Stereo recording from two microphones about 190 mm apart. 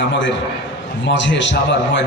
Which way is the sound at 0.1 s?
75° left (ahead or behind).